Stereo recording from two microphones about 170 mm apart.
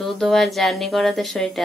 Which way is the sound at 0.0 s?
Centre (ahead or behind).